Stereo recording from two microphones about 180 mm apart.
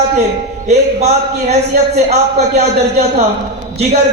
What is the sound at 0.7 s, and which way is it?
A man's voice, 40° right (ahead or behind).